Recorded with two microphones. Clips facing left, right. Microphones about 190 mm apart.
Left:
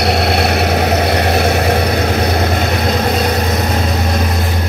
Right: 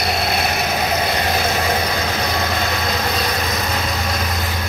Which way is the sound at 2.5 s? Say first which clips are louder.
Left 6 dB; 50° left (ahead or behind).